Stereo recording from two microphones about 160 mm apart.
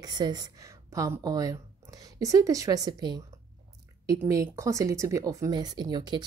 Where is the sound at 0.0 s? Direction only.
25° right (ahead or behind).